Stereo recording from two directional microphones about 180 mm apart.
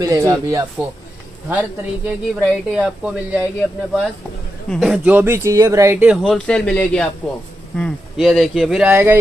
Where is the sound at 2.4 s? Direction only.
5° right (ahead or behind).